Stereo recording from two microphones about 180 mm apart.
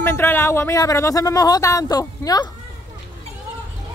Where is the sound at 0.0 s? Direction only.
15° left (ahead or behind).